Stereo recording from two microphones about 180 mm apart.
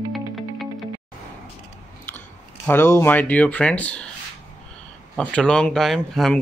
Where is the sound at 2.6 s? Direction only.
10° left (ahead or behind).